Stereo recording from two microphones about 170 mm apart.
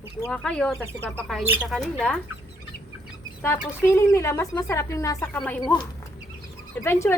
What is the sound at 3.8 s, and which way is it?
Speech, 15° left (ahead or behind).